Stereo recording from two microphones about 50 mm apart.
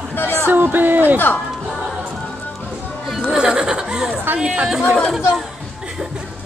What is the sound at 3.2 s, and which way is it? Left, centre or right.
Speech, centre.